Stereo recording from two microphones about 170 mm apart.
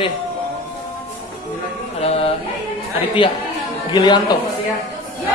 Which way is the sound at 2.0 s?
35° left (ahead or behind).